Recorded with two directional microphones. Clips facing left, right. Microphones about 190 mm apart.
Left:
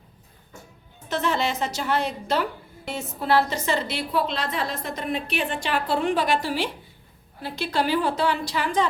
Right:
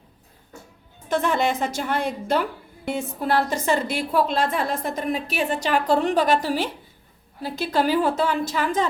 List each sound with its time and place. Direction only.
1.0 s a woman's voice: 50° right (ahead or behind)